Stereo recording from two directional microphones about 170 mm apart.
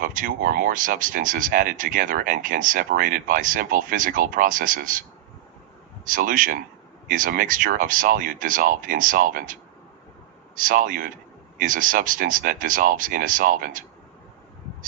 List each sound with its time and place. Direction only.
0.0 s speech: 50° right (ahead or behind)
6.1 s speech: 55° right (ahead or behind)